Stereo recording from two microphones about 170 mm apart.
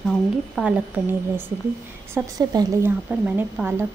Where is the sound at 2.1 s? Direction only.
20° right (ahead or behind).